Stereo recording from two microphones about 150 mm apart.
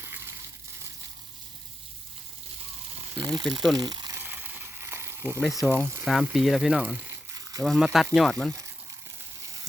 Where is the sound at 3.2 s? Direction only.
25° right (ahead or behind).